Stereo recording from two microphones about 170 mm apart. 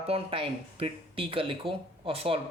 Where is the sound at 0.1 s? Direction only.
35° right (ahead or behind).